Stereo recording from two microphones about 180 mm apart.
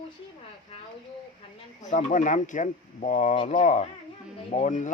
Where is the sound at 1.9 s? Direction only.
45° left (ahead or behind).